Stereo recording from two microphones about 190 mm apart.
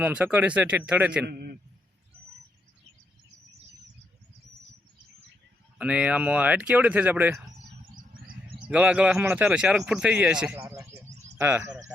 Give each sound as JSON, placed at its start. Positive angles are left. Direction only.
{"t": 0.0, "sound": "speech", "side_deg": -5}
{"t": 1.2, "sound": "a man's voice", "side_deg": -55}
{"t": 5.8, "sound": "speech", "side_deg": -5}
{"t": 8.5, "sound": "speech", "side_deg": -5}